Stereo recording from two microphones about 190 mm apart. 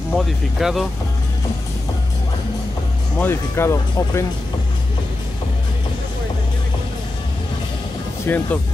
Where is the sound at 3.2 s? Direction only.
15° left (ahead or behind).